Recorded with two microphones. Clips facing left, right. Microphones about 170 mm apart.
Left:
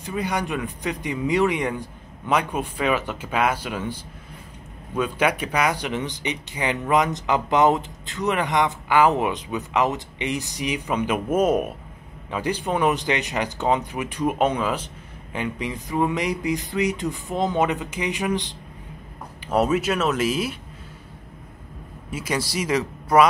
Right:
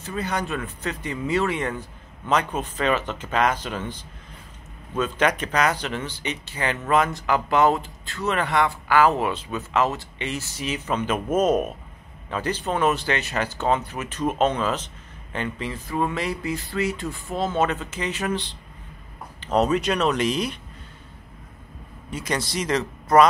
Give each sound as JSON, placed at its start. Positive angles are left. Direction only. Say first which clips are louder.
{"t": 0.0, "sound": "speech", "louder": "left 1 dB", "side_deg": 15}
{"t": 22.1, "sound": "speech", "louder": "left 1 dB", "side_deg": 10}